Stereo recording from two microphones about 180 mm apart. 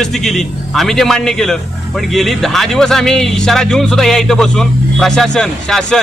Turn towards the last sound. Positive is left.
turn(degrees=0)  # may be behind; listen again after turning